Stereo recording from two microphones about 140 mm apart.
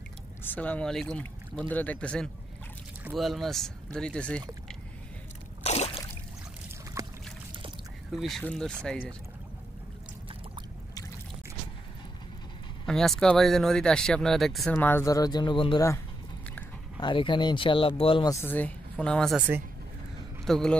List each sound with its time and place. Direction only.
0.4 s speech: 10° left (ahead or behind)
5.6 s a sound: 50° left (ahead or behind)
7.0 s boat: 25° right (ahead or behind)
8.1 s speech: centre (ahead or behind)
12.8 s speech: 5° left (ahead or behind)
14.7 s speech: 15° left (ahead or behind); by 15.8 s 35° left (ahead or behind)
17.0 s speech: 35° left (ahead or behind)
18.3 s speech: 15° left (ahead or behind)
20.4 s a man's voice: centre (ahead or behind)